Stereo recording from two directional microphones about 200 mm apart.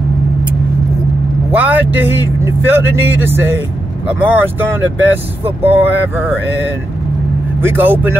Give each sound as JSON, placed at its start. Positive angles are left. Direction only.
{"t": 1.5, "sound": "speech", "side_deg": -10}
{"t": 7.6, "sound": "speech", "side_deg": -10}